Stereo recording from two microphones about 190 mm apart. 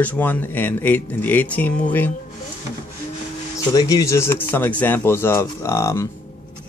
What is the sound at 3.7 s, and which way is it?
Speech, 20° left (ahead or behind).